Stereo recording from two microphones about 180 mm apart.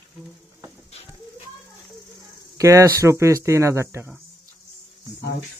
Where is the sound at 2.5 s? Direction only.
15° right (ahead or behind).